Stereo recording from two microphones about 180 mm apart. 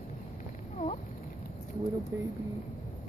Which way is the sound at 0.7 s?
40° left (ahead or behind).